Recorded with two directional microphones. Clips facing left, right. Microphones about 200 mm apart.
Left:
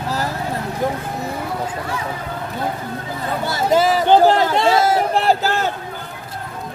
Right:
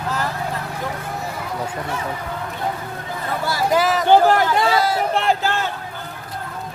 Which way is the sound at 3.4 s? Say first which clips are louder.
Left 2 dB; 25° left (ahead or behind).